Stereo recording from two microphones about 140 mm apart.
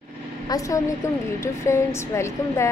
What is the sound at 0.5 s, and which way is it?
A woman's voice, 25° left (ahead or behind).